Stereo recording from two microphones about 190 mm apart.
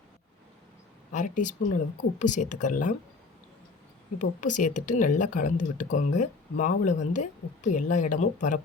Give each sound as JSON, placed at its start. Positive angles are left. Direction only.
{"t": 1.1, "sound": "speech", "side_deg": 40}
{"t": 4.2, "sound": "speech", "side_deg": 40}